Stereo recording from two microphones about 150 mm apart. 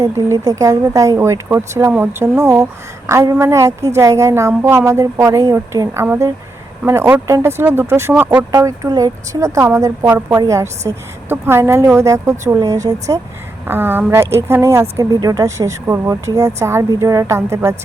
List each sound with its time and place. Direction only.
0.0 s a woman's voice: 25° right (ahead or behind)
8.5 s a woman's voice: 25° right (ahead or behind)